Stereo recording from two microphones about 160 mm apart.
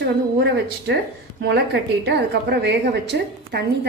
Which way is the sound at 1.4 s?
90° right.